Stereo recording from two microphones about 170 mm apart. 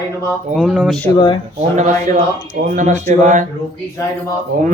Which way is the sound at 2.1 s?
55° right (ahead or behind).